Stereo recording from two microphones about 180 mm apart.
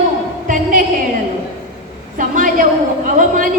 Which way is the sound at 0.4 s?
45° right (ahead or behind).